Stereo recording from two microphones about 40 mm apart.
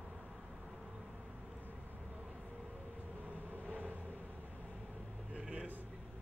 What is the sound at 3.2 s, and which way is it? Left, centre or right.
Vehicle, right.